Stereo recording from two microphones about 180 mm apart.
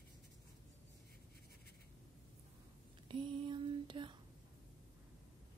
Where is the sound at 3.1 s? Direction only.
25° right (ahead or behind).